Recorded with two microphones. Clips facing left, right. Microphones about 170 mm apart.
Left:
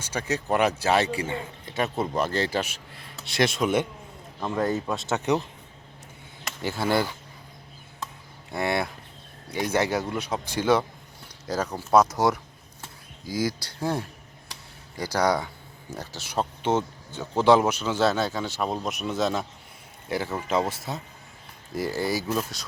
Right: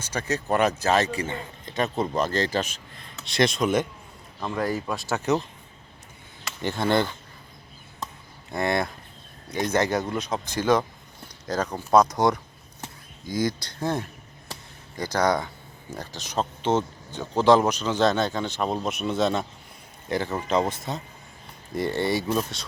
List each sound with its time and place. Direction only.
0.1 s speech: 10° left (ahead or behind)
4.5 s speech: 25° left (ahead or behind)
6.6 s speech: 5° left (ahead or behind)
8.5 s speech: 5° left (ahead or behind)